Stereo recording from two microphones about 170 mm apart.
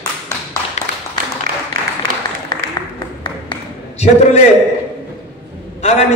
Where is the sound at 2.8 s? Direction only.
20° left (ahead or behind).